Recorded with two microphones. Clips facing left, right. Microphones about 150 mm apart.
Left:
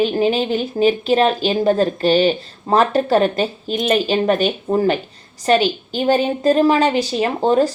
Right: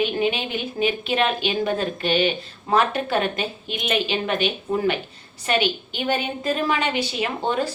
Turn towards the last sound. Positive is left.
turn(degrees=40)  # may be behind; listen again after turning